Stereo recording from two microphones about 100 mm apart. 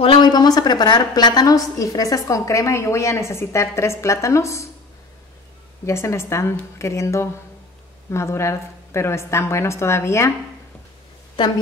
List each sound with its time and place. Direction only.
0.2 s a woman's voice: 45° left (ahead or behind)
5.9 s a woman's voice: 30° left (ahead or behind)